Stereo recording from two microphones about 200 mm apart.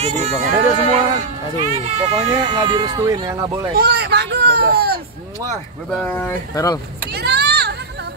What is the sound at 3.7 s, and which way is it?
A child's voice, 55° right (ahead or behind).